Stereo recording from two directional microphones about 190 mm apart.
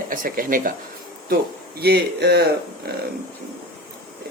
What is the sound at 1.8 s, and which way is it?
Speech, 60° right (ahead or behind).